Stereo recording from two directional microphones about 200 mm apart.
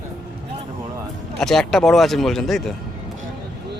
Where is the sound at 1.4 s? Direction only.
Centre (ahead or behind).